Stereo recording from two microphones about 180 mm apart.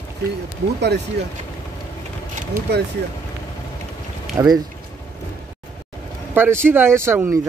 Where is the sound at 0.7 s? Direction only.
70° right (ahead or behind).